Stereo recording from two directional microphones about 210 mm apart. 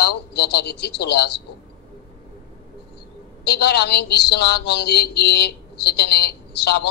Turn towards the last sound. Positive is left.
turn(degrees=50)  # may be behind; listen again after turning